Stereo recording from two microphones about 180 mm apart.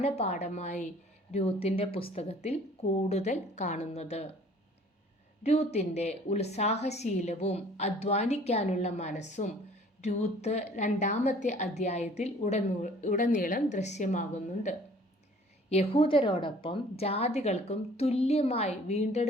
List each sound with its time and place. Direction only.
0.0 s a woman's voice: 35° left (ahead or behind)
5.4 s a woman's voice: 35° left (ahead or behind)